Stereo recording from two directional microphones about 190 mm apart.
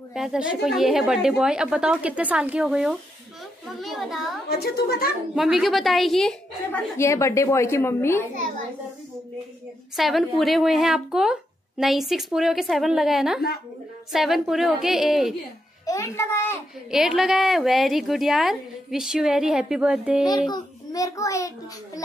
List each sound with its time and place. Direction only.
0.1 s a woman's voice: 5° right (ahead or behind)
4.5 s a woman's voice: 55° left (ahead or behind)
5.3 s a woman's voice: centre (ahead or behind)
7.0 s a woman's voice: 15° left (ahead or behind)
9.9 s a woman's voice: centre (ahead or behind)
15.8 s a child's voice: 15° left (ahead or behind)
16.9 s a woman's voice: centre (ahead or behind)
20.2 s a woman's voice: 20° left (ahead or behind)